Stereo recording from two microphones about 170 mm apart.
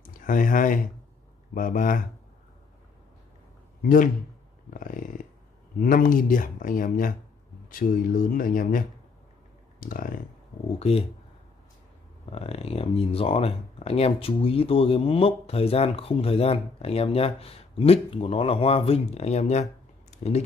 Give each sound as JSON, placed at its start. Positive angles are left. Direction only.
{"t": 0.0, "sound": "speech", "side_deg": 50}
{"t": 3.8, "sound": "speech", "side_deg": 55}
{"t": 4.6, "sound": "a sound", "side_deg": 50}
{"t": 5.8, "sound": "speech", "side_deg": 55}
{"t": 9.8, "sound": "computer keyboard", "side_deg": 55}
{"t": 10.8, "sound": "speech", "side_deg": 35}
{"t": 12.3, "sound": "speech", "side_deg": 35}
{"t": 20.1, "sound": "a sound", "side_deg": 40}